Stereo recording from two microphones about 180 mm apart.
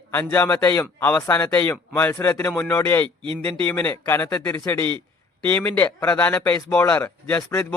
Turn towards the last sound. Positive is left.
turn(degrees=15)  # may be behind; listen again after turning